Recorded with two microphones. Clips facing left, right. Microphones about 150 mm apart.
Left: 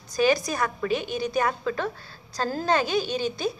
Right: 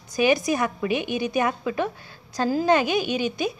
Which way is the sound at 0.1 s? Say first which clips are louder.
Right 2 dB; 15° right (ahead or behind).